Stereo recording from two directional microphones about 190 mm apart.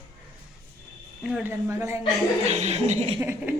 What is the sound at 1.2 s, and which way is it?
Speech, 5° right (ahead or behind).